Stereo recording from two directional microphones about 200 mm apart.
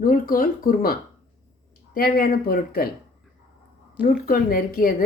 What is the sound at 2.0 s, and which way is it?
Speech, 50° left (ahead or behind).